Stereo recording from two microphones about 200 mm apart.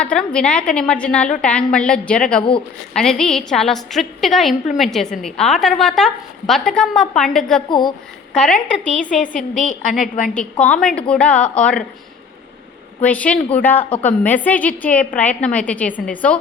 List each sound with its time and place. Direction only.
0.0 s a woman's voice: 5° left (ahead or behind)
7.7 s a woman's voice: 20° left (ahead or behind)
8.3 s speech: 5° left (ahead or behind)
8.9 s a woman's voice: 40° left (ahead or behind)
10.3 s a woman's voice: 5° left (ahead or behind)
13.0 s a woman's voice: 5° left (ahead or behind)